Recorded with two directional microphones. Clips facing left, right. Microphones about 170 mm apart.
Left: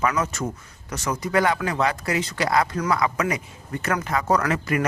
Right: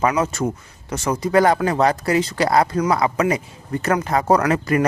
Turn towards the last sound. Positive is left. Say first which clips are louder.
# right 5 dB
turn(degrees=-35)  # may be behind; listen again after turning